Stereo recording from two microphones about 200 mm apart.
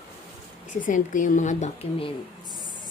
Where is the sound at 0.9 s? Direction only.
40° left (ahead or behind).